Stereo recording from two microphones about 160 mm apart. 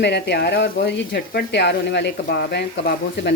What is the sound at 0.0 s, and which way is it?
Speech, 90° left.